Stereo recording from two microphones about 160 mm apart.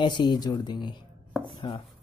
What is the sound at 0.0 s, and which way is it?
Speech, 30° left (ahead or behind).